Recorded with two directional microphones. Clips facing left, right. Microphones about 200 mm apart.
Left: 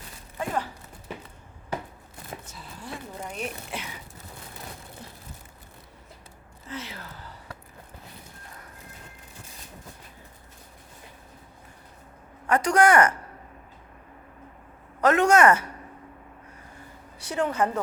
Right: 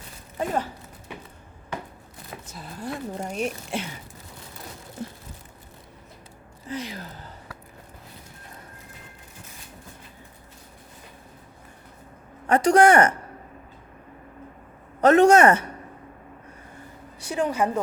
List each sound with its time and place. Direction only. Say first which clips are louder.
0.3 s a sound: right 3 dB; 30° right (ahead or behind)
2.3 s a sound: left 1 dB; 30° left (ahead or behind)
2.8 s a woman's voice: right 6 dB; 35° right (ahead or behind)
6.7 s speech: right 5 dB; 15° right (ahead or behind)
12.5 s a woman's voice: right 4 dB; 25° right (ahead or behind)
15.0 s a woman's voice: right 4 dB; 30° right (ahead or behind)
17.2 s a woman's voice: right 1 dB; 15° right (ahead or behind)